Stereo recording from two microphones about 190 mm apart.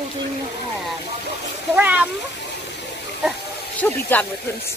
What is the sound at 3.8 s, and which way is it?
Speech, 10° left (ahead or behind).